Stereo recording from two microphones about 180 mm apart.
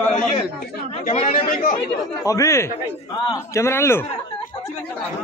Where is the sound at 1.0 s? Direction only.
40° left (ahead or behind).